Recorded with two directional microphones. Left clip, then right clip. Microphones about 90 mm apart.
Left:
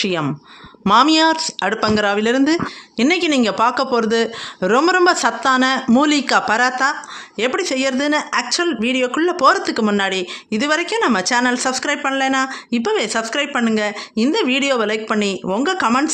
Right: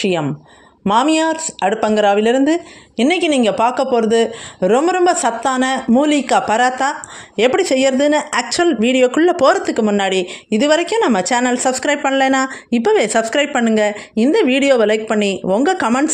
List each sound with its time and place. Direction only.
0.0 s a woman's voice: 25° right (ahead or behind)
1.0 s a woman's voice: 10° right (ahead or behind); by 6.9 s 30° right (ahead or behind)
7.3 s speech: 55° right (ahead or behind); by 8.3 s 35° right (ahead or behind)
8.3 s speech: 50° right (ahead or behind)
9.4 s speech: 35° right (ahead or behind)
10.0 s speech: 40° right (ahead or behind)
13.6 s speech: 30° right (ahead or behind)
15.6 s speech: 45° right (ahead or behind)